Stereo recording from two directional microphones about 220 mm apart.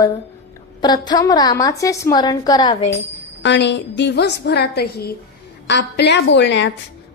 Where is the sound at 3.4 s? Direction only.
50° left (ahead or behind).